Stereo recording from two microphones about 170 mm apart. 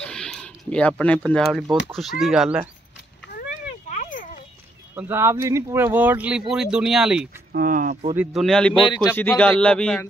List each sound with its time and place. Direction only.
0.0 s speech: 5° left (ahead or behind)
3.9 s a sound: 50° left (ahead or behind)
4.9 s speech: 15° right (ahead or behind)
7.5 s speech: 50° right (ahead or behind)
8.2 s speech: centre (ahead or behind)
8.7 s speech: 25° left (ahead or behind)
9.1 s speech: 10° left (ahead or behind)